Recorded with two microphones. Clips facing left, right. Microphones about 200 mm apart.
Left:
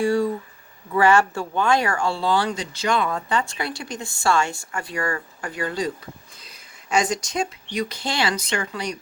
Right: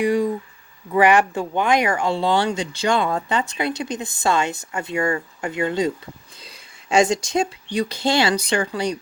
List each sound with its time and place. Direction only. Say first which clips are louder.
0.0 s speech: right 1 dB; 15° right (ahead or behind)